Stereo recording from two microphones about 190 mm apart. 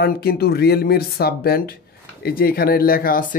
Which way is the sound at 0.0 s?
55° left (ahead or behind).